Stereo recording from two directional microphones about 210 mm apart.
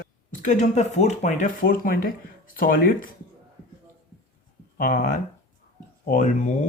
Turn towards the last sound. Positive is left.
turn(degrees=40)  # may be behind; listen again after turning